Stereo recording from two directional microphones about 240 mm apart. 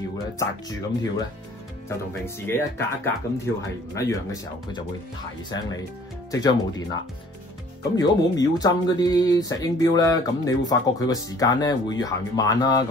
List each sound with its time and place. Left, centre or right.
0.4 s speech: centre
6.3 s speech: centre